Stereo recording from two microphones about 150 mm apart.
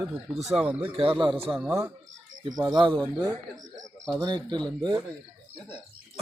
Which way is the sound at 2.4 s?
25° right (ahead or behind).